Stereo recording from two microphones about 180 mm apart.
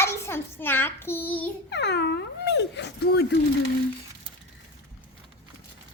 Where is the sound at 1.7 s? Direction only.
70° left (ahead or behind).